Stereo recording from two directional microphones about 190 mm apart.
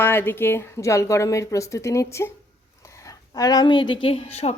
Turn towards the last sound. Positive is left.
turn(degrees=30)  # may be behind; listen again after turning